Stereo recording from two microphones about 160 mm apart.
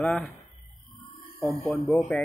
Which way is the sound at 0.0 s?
Centre (ahead or behind).